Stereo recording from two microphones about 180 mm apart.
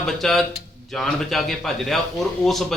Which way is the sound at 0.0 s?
Centre (ahead or behind).